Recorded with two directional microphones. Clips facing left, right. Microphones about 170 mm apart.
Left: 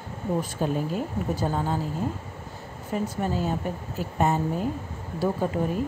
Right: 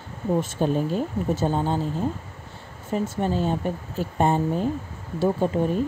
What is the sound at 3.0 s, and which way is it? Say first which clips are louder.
Speech: right 3 dB; 25° right (ahead or behind).